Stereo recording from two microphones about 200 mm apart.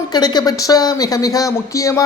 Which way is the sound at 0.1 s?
20° left (ahead or behind).